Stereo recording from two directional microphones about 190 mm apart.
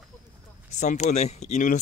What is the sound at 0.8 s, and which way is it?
Speech, 40° left (ahead or behind).